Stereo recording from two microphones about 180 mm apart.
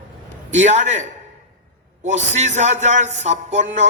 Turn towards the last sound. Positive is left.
turn(degrees=-40)  # may be behind; listen again after turning